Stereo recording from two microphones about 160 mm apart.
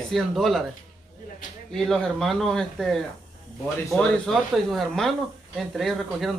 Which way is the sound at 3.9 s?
5° left (ahead or behind).